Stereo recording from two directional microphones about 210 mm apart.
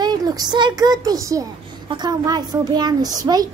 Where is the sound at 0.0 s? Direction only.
20° right (ahead or behind).